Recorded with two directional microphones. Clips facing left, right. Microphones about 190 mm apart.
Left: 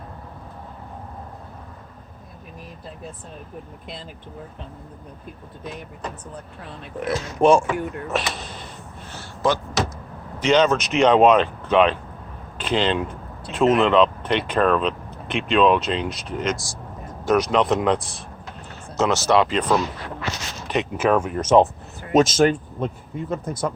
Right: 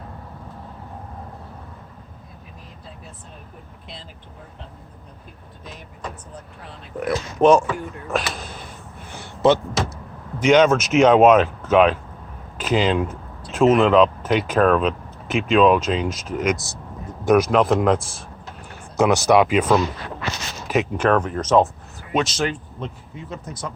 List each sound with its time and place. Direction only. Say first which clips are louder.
6.9 s speech: right 2 dB; centre (ahead or behind)
7.4 s speech: right 1 dB; 10° left (ahead or behind)
9.0 s a sound: right 5 dB; 15° right (ahead or behind)
10.4 s speech: right 3 dB; 10° right (ahead or behind)
18.9 s speech: right 3 dB; 15° right (ahead or behind)
20.9 s speech: left 2 dB; 5° left (ahead or behind)
22.1 s speech: left 6 dB; 45° left (ahead or behind)